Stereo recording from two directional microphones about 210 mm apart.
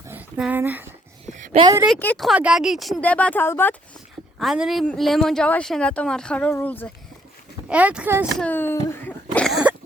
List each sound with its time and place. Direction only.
0.1 s a sound: 5° right (ahead or behind)
1.5 s speech: 20° right (ahead or behind)
2.0 s speech: 5° left (ahead or behind)
4.4 s speech: centre (ahead or behind)
7.7 s speech: 5° right (ahead or behind)
8.4 s speech: 10° left (ahead or behind)